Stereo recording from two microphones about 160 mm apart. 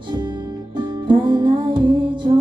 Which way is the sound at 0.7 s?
30° right (ahead or behind).